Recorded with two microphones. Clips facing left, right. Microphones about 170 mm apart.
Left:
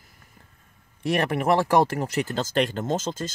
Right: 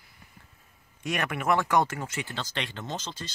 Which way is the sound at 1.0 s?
30° left (ahead or behind).